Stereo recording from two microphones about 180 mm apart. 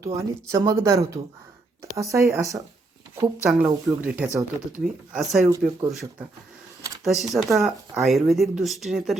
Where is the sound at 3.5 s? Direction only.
5° right (ahead or behind).